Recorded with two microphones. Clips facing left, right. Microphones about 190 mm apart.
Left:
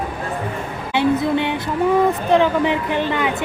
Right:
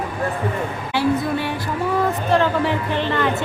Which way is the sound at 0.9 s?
20° left (ahead or behind).